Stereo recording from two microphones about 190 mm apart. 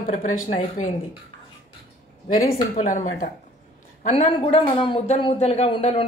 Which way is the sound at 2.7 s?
45° left (ahead or behind).